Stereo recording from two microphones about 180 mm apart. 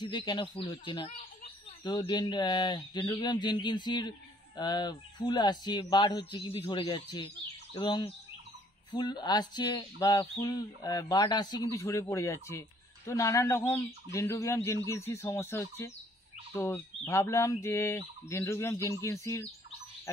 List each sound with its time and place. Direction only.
0.0 s speech: 25° left (ahead or behind)